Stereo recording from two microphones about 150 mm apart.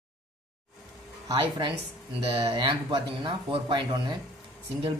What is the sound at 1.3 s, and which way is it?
A man's voice, 30° right (ahead or behind).